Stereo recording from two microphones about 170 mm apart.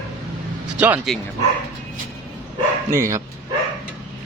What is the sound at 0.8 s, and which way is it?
Speech, 10° right (ahead or behind).